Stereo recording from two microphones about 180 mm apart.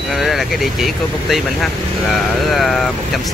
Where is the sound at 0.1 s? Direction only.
Centre (ahead or behind).